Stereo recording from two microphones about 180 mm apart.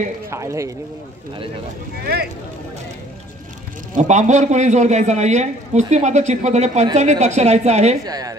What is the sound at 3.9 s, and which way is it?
A man's voice, 40° right (ahead or behind).